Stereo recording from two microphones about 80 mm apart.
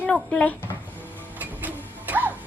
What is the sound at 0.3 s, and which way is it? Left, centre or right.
Speech, centre.